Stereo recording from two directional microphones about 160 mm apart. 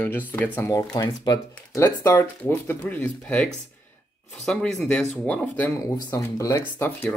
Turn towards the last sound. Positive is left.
turn(degrees=15)  # may be behind; listen again after turning